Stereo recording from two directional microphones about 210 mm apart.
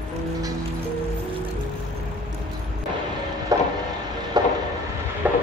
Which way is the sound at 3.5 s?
15° right (ahead or behind).